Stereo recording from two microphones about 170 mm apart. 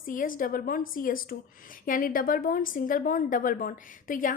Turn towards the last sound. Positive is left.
turn(degrees=55)  # may be behind; listen again after turning